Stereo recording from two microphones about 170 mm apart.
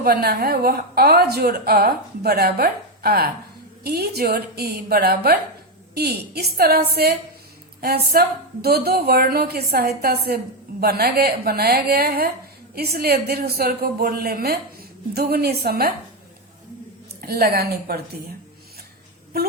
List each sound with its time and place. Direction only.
0.0 s a woman's voice: 65° right (ahead or behind)
17.2 s a woman's voice: 65° right (ahead or behind)